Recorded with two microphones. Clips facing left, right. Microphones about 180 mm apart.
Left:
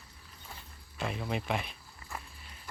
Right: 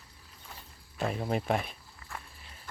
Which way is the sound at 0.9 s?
40° right (ahead or behind).